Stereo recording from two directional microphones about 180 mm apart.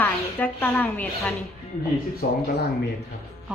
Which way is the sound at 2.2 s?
55° left (ahead or behind).